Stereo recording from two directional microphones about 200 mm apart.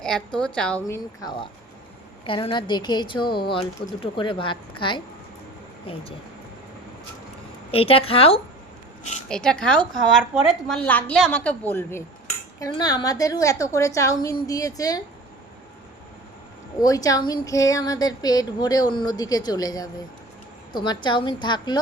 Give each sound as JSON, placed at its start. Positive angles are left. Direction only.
{"t": 0.0, "sound": "a woman's voice", "side_deg": 5}
{"t": 2.2, "sound": "speech", "side_deg": 25}
{"t": 7.7, "sound": "speech", "side_deg": 30}
{"t": 9.3, "sound": "a woman's voice", "side_deg": 5}
{"t": 16.7, "sound": "speech", "side_deg": 15}